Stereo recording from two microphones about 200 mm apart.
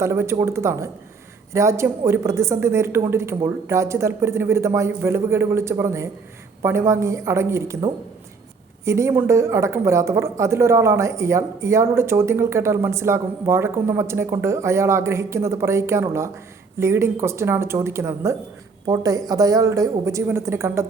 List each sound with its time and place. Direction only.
0.0 s speech: 15° right (ahead or behind)